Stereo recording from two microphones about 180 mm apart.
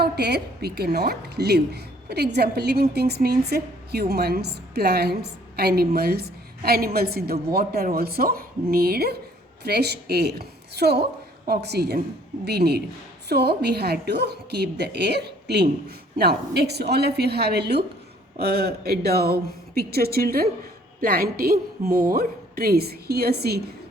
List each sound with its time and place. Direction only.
0.0 s a woman's voice: 65° right (ahead or behind)